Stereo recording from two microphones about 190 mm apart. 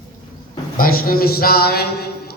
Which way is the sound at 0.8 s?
50° left (ahead or behind).